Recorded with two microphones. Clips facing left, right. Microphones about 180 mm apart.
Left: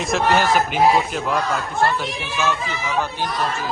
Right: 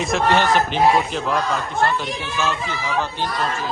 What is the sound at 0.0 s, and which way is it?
A man's voice, centre (ahead or behind).